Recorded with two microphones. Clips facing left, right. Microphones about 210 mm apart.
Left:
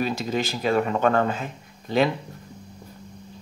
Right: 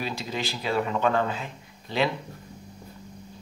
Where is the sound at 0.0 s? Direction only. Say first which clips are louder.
Left 6 dB; 45° left (ahead or behind).